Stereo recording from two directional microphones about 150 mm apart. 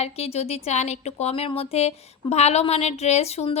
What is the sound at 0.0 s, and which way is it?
A woman's voice, 45° left (ahead or behind).